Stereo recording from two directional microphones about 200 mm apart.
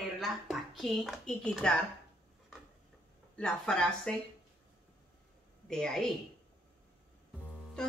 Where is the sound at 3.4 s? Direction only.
5° left (ahead or behind).